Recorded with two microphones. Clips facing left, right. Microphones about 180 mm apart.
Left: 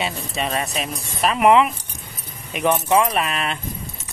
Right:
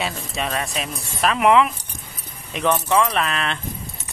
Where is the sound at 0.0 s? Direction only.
Centre (ahead or behind).